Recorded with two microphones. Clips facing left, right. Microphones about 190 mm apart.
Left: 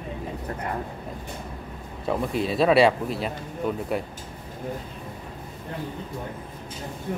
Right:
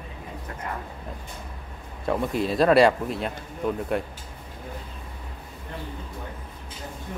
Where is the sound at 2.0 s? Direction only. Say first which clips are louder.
Even; centre (ahead or behind).